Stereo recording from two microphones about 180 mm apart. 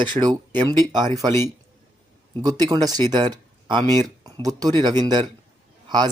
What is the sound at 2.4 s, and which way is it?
A man's voice, 20° right (ahead or behind).